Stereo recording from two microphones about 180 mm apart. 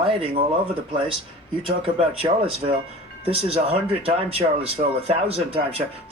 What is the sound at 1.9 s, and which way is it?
Speech, 30° right (ahead or behind).